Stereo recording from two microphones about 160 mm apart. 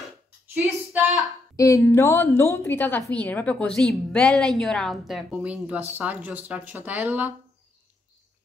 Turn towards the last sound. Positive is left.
turn(degrees=-10)  # may be behind; listen again after turning